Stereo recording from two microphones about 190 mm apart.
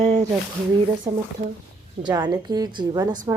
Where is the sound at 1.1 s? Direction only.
15° right (ahead or behind).